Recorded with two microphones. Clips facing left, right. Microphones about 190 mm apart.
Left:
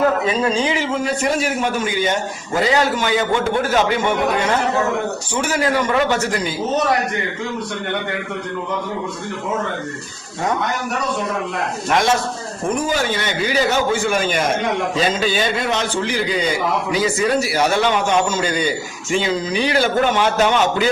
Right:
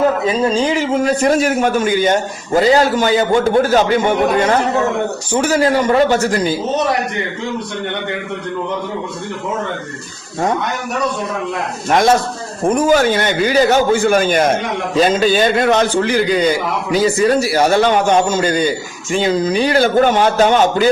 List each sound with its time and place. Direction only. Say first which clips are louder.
0.3 s a man's voice: right 3 dB; 40° right (ahead or behind)
5.3 s a man's voice: right 6 dB; 35° right (ahead or behind)
11.9 s a man's voice: right 5 dB; 35° right (ahead or behind)
16.9 s a man's voice: right 7 dB; 35° right (ahead or behind)